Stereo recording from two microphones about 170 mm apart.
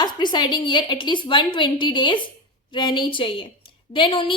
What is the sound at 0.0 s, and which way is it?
A woman's voice, 25° left (ahead or behind).